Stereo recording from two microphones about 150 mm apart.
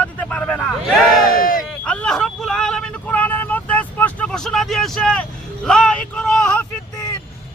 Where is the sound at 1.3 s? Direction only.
70° left (ahead or behind).